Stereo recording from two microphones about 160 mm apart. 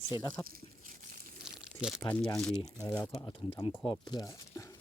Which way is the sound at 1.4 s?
5° right (ahead or behind).